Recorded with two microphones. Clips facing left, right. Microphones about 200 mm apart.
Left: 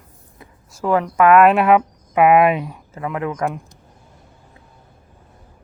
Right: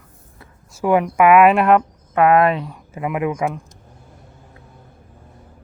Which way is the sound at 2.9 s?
15° right (ahead or behind).